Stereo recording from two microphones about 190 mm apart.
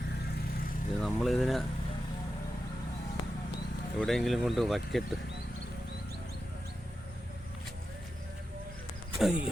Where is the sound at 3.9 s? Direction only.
Centre (ahead or behind).